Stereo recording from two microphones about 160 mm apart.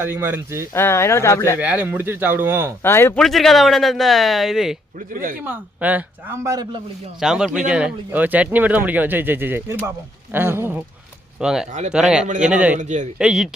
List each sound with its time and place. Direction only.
0.0 s speech: 15° right (ahead or behind)
0.7 s speech: 15° left (ahead or behind)
1.5 s speech: 10° right (ahead or behind)
2.8 s speech: 15° left (ahead or behind)
3.2 s speech: centre (ahead or behind)
4.9 s speech: 60° right (ahead or behind)
5.4 s speech: 10° right (ahead or behind)
7.2 s speech: 5° right (ahead or behind)
12.7 s a man's voice: 50° right (ahead or behind)
13.1 s speech: 5° right (ahead or behind)